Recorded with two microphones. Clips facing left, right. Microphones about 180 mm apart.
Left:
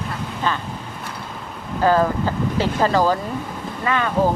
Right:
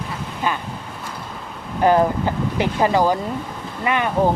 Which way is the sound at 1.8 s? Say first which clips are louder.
Right 1 dB; 20° right (ahead or behind).